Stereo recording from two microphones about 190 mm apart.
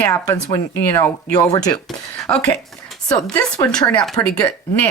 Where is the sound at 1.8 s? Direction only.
5° left (ahead or behind).